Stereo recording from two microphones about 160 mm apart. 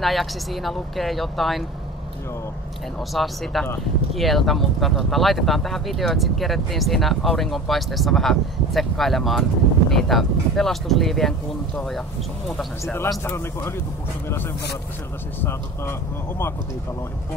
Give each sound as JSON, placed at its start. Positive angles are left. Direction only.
{"t": 0.0, "sound": "speech", "side_deg": 0}
{"t": 3.1, "sound": "speech", "side_deg": 0}
{"t": 13.2, "sound": "speech", "side_deg": 15}
{"t": 15.4, "sound": "speech", "side_deg": 15}